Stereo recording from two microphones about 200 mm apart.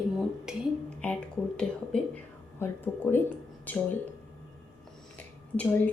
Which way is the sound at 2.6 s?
10° left (ahead or behind).